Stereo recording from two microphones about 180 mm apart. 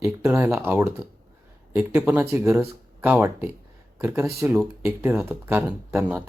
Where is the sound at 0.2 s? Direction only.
15° right (ahead or behind).